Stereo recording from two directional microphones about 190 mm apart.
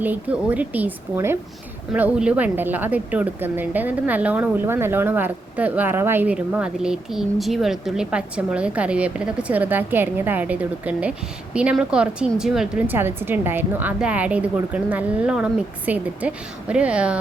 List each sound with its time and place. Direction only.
0.0 s a woman's voice: 10° right (ahead or behind)